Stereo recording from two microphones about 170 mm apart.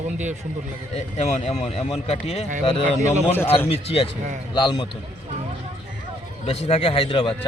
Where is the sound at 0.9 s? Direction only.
35° left (ahead or behind).